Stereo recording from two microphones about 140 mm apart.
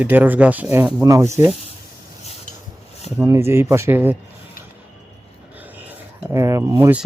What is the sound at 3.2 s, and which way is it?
Speech, 20° right (ahead or behind).